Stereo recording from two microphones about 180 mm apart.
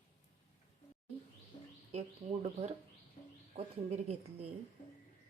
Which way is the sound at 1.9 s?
35° right (ahead or behind).